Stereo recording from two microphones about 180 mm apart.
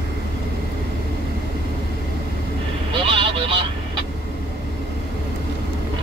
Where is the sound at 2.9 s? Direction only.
30° right (ahead or behind).